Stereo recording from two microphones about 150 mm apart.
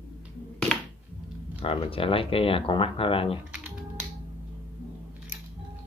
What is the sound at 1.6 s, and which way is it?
Speech, 35° left (ahead or behind).